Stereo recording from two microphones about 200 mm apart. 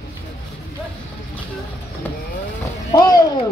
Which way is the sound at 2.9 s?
20° left (ahead or behind).